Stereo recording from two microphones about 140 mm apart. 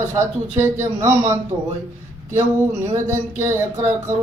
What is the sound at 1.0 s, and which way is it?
Speech, 20° right (ahead or behind).